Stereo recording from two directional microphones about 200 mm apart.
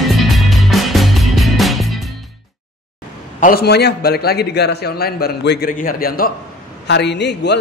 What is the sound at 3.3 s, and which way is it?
A man's voice, 45° left (ahead or behind).